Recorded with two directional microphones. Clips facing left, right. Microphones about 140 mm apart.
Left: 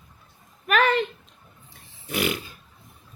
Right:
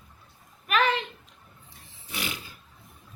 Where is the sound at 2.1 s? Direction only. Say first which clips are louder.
Left 10 dB; 55° left (ahead or behind).